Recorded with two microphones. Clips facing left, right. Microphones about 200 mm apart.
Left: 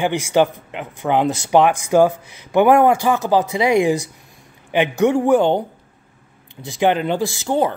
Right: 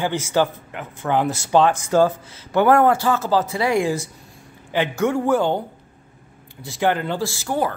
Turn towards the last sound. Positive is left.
turn(degrees=20)  # may be behind; listen again after turning